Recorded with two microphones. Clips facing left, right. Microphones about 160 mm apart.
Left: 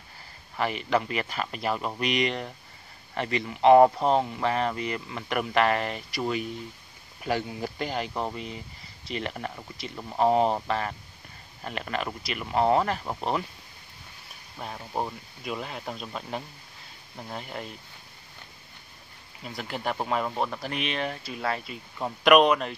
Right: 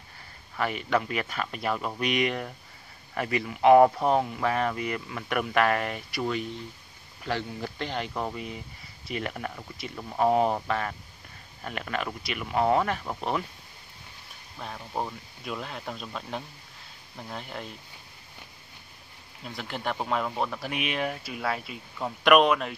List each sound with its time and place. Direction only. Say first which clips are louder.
0.6 s speech: left 1 dB; centre (ahead or behind)
7.2 s speech: left 2 dB; 10° left (ahead or behind)
14.6 s speech: left 1 dB; 10° left (ahead or behind)
19.4 s speech: left 1 dB; centre (ahead or behind)
20.5 s speech: even; 5° right (ahead or behind)